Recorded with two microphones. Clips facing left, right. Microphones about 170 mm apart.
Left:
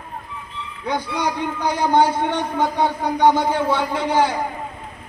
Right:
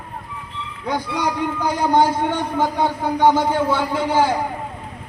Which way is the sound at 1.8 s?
5° right (ahead or behind).